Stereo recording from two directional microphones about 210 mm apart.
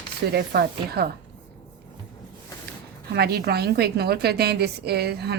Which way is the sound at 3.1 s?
50° right (ahead or behind).